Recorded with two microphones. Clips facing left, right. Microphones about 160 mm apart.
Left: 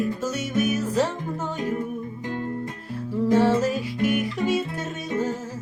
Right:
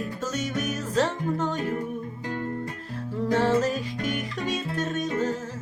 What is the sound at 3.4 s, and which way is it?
Music, 10° left (ahead or behind).